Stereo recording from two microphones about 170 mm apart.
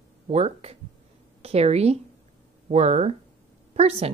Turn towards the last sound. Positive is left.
turn(degrees=-35)  # may be behind; listen again after turning